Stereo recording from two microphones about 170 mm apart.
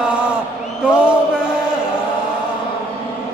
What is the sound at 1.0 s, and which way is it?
Mantra, 5° right (ahead or behind).